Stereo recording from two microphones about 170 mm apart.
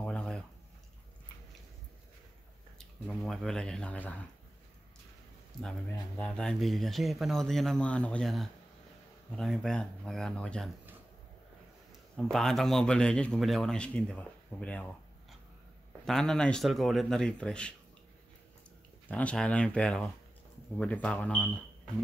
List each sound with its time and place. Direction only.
0.0 s a sound: 5° left (ahead or behind)
2.8 s a man's voice: centre (ahead or behind)
5.9 s a man's voice: 15° left (ahead or behind)
12.2 s a man's voice: centre (ahead or behind)
16.1 s a man's voice: centre (ahead or behind)
19.0 s speech: 10° left (ahead or behind)